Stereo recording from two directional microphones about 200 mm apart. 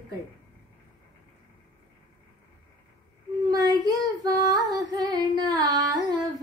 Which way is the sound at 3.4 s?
20° right (ahead or behind).